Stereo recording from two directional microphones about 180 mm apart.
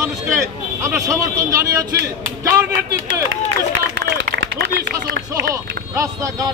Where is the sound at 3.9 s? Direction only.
85° right.